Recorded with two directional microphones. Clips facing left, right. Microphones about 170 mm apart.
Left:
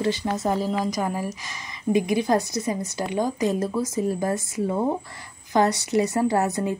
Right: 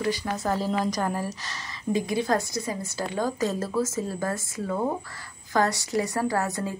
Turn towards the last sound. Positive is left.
turn(degrees=20)  # may be behind; listen again after turning